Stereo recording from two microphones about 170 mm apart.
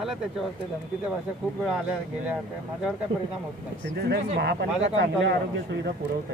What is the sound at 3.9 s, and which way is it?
A man's voice, 80° right.